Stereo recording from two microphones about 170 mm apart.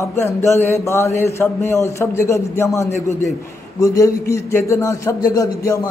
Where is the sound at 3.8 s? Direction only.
20° left (ahead or behind).